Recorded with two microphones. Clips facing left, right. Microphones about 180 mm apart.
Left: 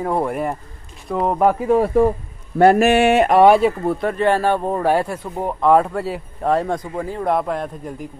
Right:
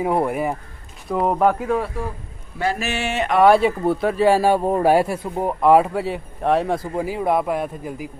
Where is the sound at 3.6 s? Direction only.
Centre (ahead or behind).